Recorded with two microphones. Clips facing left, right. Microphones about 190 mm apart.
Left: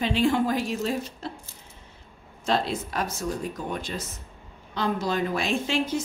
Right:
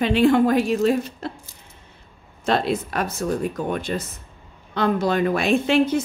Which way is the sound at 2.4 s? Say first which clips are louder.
Right 5 dB; 65° right (ahead or behind).